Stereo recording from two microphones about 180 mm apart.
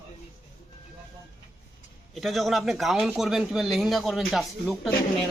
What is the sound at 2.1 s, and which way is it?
Speech, centre (ahead or behind).